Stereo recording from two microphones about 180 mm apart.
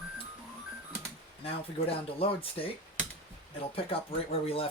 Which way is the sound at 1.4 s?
30° left (ahead or behind).